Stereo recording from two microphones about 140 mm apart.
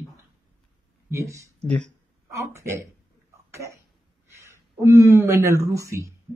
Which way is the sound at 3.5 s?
20° right (ahead or behind).